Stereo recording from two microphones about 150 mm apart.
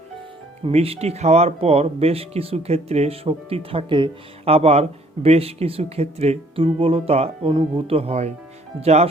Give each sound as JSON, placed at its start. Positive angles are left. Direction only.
{"t": 0.6, "sound": "speech", "side_deg": -40}